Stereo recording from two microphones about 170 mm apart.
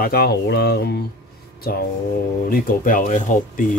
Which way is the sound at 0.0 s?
65° left (ahead or behind).